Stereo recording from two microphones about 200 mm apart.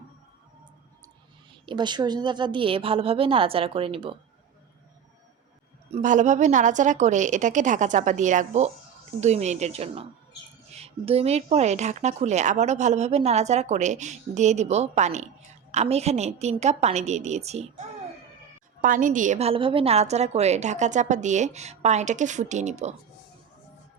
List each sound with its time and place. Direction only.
1.6 s a woman's voice: 20° right (ahead or behind)
5.9 s speech: 40° right (ahead or behind)